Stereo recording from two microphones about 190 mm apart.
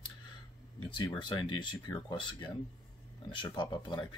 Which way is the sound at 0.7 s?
25° left (ahead or behind).